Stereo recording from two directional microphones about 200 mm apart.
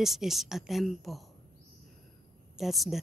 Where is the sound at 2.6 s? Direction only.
Centre (ahead or behind).